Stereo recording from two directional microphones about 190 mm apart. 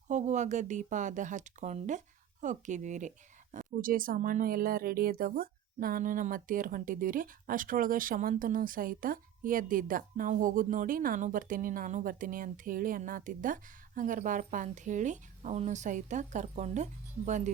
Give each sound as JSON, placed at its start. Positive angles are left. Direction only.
{"t": 0.1, "sound": "speech", "side_deg": -40}